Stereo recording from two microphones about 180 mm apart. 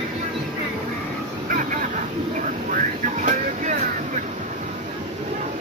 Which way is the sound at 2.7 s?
45° right (ahead or behind).